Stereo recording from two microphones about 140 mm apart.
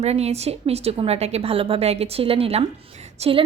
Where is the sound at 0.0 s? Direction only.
50° right (ahead or behind).